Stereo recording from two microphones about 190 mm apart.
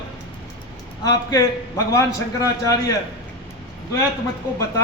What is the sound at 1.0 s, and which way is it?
A man's voice, 20° left (ahead or behind).